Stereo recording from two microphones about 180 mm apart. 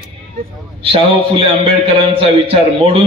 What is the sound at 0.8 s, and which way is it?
A man's voice, 30° right (ahead or behind).